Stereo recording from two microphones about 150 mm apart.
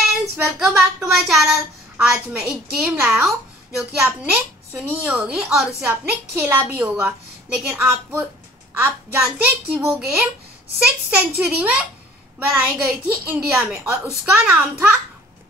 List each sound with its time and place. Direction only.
0.6 s a woman's voice: 5° right (ahead or behind)